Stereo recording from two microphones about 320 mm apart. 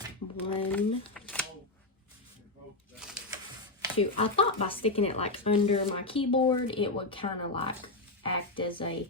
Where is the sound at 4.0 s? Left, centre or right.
Centre.